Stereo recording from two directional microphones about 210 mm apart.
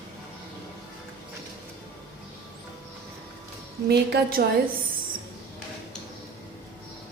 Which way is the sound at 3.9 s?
45° right (ahead or behind).